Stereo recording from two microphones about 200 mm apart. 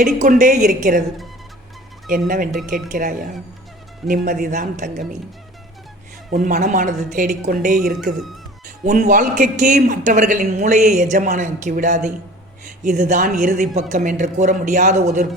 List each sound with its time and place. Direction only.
0.0 s a man's voice: 40° right (ahead or behind)
2.0 s a man's voice: 45° right (ahead or behind)
6.3 s a man's voice: 40° right (ahead or behind)